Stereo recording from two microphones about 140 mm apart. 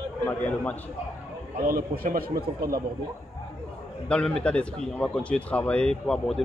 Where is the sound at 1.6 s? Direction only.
90° right.